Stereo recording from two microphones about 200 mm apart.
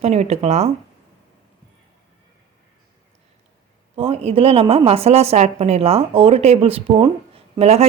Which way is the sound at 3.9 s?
30° right (ahead or behind).